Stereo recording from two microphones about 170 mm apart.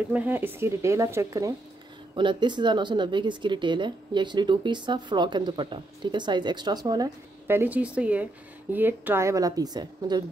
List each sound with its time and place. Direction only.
0.1 s a woman's voice: 10° right (ahead or behind)